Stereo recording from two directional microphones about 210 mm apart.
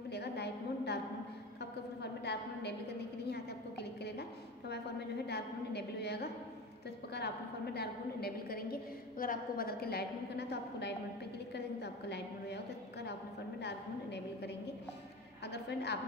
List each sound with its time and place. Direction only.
0.1 s a sound: 50° left (ahead or behind)
5.2 s a woman's voice: 50° left (ahead or behind)
13.6 s a woman's voice: 55° left (ahead or behind)